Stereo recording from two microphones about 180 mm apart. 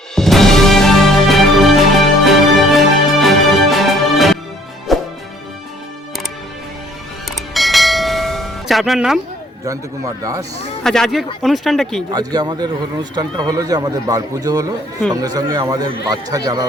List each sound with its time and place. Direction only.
0.2 s music: centre (ahead or behind)
7.3 s a sound: centre (ahead or behind)
9.6 s speech: 20° right (ahead or behind)
10.8 s speech: centre (ahead or behind)
12.1 s a man's voice: 20° right (ahead or behind)